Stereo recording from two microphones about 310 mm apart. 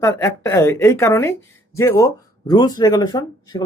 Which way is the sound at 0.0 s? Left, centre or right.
Centre.